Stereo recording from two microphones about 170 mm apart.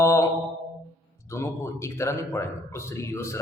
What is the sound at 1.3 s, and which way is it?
A man's voice, 15° left (ahead or behind).